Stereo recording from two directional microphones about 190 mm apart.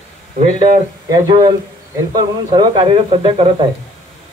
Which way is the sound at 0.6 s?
20° right (ahead or behind).